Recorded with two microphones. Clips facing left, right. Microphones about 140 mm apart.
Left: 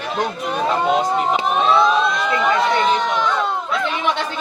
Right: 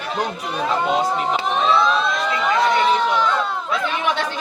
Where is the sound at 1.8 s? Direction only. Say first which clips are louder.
Left 3 dB; centre (ahead or behind).